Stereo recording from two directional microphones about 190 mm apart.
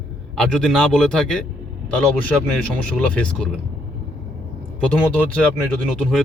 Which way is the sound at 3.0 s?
5° left (ahead or behind).